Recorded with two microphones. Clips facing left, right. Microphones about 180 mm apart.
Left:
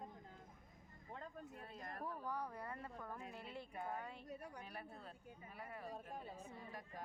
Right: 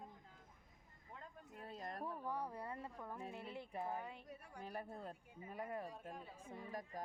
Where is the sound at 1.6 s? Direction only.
40° right (ahead or behind).